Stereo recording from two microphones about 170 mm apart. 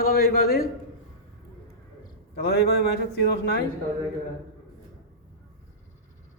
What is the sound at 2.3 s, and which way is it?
A man's voice, 65° left (ahead or behind).